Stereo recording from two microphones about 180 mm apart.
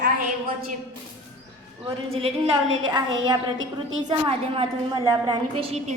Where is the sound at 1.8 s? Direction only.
30° right (ahead or behind).